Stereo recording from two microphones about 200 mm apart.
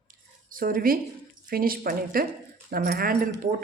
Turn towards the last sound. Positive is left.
turn(degrees=-45)  # may be behind; listen again after turning